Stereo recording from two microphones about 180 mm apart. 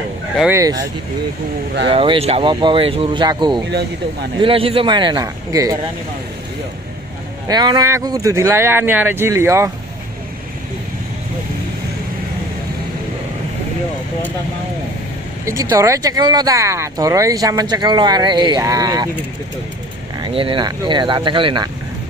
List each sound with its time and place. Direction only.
0.5 s speech: 20° right (ahead or behind)
1.9 s speech: 30° right (ahead or behind)
7.4 s speech: 20° right (ahead or behind)
15.4 s speech: 20° right (ahead or behind)
20.2 s speech: 30° right (ahead or behind)